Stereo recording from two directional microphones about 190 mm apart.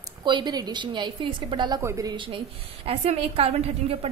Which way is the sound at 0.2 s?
25° right (ahead or behind).